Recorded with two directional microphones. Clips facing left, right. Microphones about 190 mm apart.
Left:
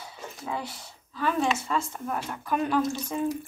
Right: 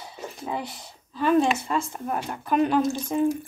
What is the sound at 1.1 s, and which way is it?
Speech, 20° right (ahead or behind).